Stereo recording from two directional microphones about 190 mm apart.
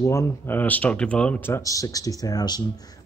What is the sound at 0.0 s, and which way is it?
Speech, 15° left (ahead or behind).